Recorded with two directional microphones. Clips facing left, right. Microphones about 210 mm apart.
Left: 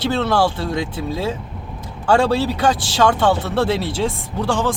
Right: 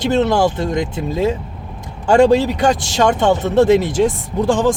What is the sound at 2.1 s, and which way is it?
Speech, 15° right (ahead or behind).